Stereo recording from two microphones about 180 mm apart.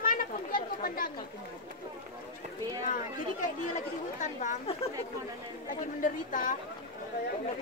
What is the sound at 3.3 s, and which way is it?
Speech, 45° left (ahead or behind).